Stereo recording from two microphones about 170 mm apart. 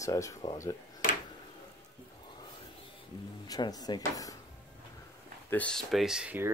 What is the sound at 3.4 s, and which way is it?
Speech, 20° left (ahead or behind).